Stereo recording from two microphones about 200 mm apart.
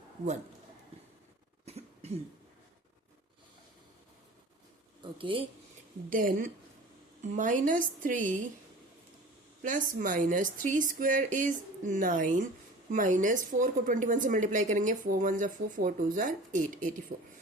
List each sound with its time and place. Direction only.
1.6 s cough: 30° right (ahead or behind)
5.1 s speech: 25° right (ahead or behind)
6.1 s a woman's voice: 45° right (ahead or behind)
9.6 s a woman's voice: 40° right (ahead or behind)